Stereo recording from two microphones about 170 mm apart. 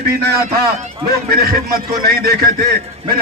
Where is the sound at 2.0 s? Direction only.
65° right (ahead or behind).